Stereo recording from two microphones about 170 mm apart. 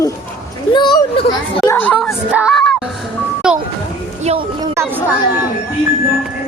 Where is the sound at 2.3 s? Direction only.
5° right (ahead or behind).